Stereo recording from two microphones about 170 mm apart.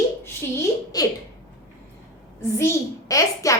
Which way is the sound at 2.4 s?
15° left (ahead or behind).